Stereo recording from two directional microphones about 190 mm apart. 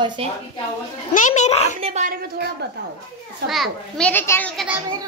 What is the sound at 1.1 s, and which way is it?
Speech, 40° left (ahead or behind).